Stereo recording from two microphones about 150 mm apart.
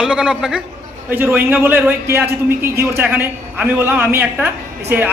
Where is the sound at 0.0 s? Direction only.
5° right (ahead or behind).